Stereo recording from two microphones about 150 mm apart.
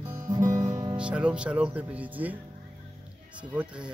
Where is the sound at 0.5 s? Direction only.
25° right (ahead or behind).